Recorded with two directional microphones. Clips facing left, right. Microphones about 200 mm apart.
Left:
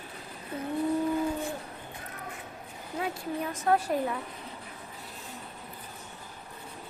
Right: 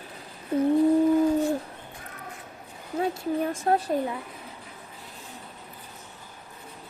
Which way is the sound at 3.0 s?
30° right (ahead or behind).